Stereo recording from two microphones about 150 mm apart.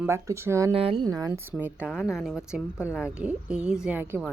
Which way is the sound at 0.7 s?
40° right (ahead or behind).